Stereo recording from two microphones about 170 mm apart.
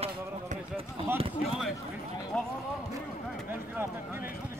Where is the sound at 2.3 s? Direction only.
5° left (ahead or behind).